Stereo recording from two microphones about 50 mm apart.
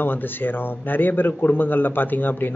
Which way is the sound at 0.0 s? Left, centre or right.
Left.